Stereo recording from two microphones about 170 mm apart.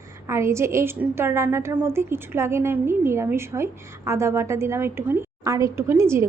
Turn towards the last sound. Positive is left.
turn(degrees=-15)  # may be behind; listen again after turning